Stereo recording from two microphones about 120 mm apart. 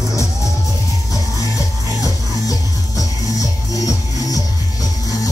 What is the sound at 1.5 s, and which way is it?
Music, 30° left (ahead or behind).